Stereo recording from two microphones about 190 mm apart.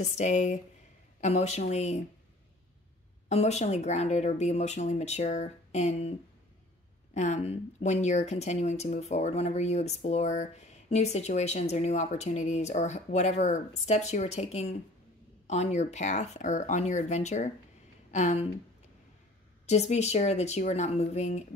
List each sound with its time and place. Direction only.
0.0 s speech: 40° left (ahead or behind)
3.3 s speech: 35° left (ahead or behind)
7.2 s speech: 40° left (ahead or behind)
19.6 s speech: 35° left (ahead or behind)